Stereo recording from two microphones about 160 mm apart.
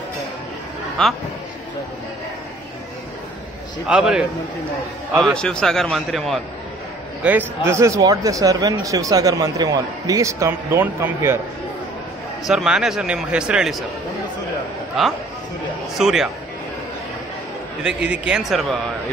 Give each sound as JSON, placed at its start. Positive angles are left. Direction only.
{"t": 1.0, "sound": "speech", "side_deg": 5}
{"t": 3.8, "sound": "speech", "side_deg": -5}
{"t": 5.2, "sound": "speech", "side_deg": 5}
{"t": 7.2, "sound": "speech", "side_deg": -15}
{"t": 12.4, "sound": "speech", "side_deg": -5}
{"t": 15.9, "sound": "speech", "side_deg": 0}
{"t": 17.8, "sound": "speech", "side_deg": -5}